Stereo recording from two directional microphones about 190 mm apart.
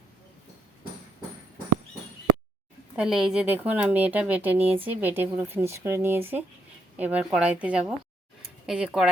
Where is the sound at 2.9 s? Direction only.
Centre (ahead or behind).